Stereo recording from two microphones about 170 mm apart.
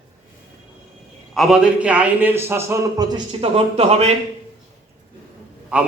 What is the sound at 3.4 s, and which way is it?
Speech, 35° right (ahead or behind).